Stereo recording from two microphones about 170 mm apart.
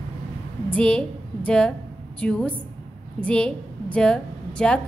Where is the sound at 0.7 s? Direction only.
5° left (ahead or behind).